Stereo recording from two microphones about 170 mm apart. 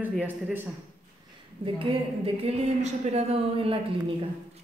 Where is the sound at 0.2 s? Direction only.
10° right (ahead or behind).